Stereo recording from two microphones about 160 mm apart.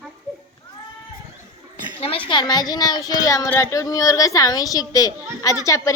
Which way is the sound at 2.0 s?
35° left (ahead or behind).